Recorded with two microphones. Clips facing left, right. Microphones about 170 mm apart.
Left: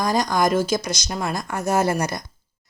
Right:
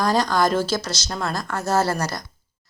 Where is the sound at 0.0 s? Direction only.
10° left (ahead or behind).